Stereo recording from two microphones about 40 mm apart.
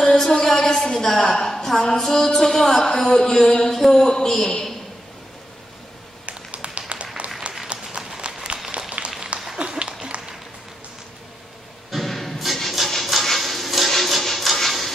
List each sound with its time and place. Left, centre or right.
0.0 s a woman's voice: centre
1.9 s music: centre
6.2 s a sound: right
7.2 s applause: right
7.7 s run: right
8.5 s a sound: right
11.9 s music: centre